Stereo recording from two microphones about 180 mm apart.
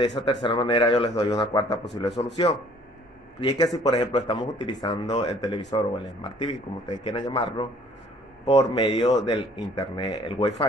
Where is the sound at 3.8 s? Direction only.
25° left (ahead or behind).